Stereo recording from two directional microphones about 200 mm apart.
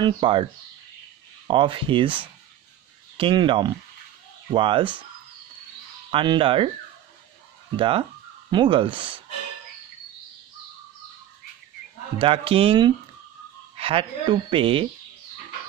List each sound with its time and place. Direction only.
0.0 s a woman's voice: 25° right (ahead or behind)
1.5 s a woman's voice: 25° right (ahead or behind)
3.2 s a woman's voice: 25° right (ahead or behind)
6.0 s a woman's voice: 25° right (ahead or behind)
7.7 s a woman's voice: 25° right (ahead or behind)
12.2 s a woman's voice: 25° right (ahead or behind)